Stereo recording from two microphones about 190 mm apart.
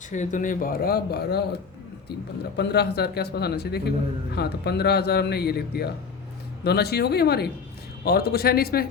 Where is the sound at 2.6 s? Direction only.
60° left (ahead or behind).